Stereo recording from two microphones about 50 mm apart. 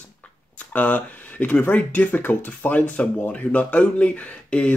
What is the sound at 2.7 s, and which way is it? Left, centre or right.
Speech, left.